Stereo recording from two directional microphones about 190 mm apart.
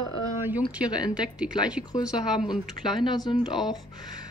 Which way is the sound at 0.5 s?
5° right (ahead or behind).